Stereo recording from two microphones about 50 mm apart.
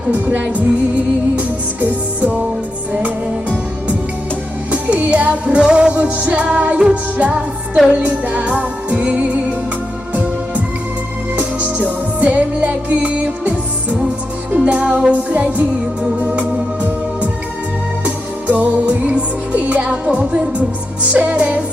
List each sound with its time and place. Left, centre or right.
0.1 s music: right
4.7 s music: right
11.3 s music: right
16.2 s organ: right
18.0 s music: right